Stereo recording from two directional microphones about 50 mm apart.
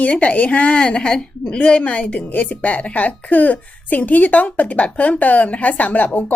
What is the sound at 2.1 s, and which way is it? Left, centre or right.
Speech, left.